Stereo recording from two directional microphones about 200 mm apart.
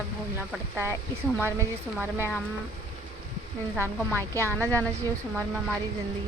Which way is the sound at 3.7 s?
10° right (ahead or behind).